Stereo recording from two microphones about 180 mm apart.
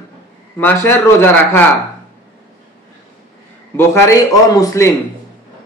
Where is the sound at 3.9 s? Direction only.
20° left (ahead or behind).